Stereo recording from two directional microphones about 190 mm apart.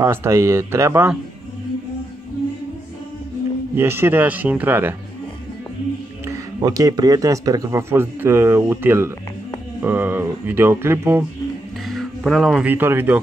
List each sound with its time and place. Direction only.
0.0 s speech: 15° right (ahead or behind)
3.7 s speech: 10° right (ahead or behind)
6.2 s speech: 20° right (ahead or behind)
11.9 s speech: centre (ahead or behind)